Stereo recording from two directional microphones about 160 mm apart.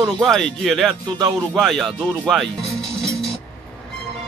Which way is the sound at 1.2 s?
25° right (ahead or behind).